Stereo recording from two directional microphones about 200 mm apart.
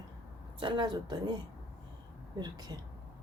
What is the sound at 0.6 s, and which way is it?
Speech, 25° right (ahead or behind).